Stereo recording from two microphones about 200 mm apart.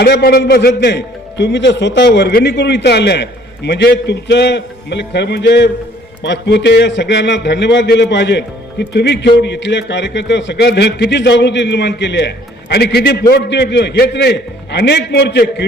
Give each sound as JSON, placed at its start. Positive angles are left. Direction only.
{"t": 0.0, "sound": "a man's voice", "side_deg": 55}